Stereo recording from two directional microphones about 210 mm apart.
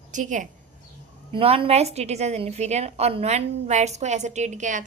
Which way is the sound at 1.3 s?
25° right (ahead or behind).